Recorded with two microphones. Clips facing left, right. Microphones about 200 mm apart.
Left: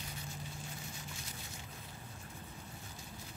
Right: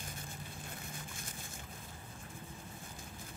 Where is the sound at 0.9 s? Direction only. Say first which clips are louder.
Right 1 dB; 50° right (ahead or behind).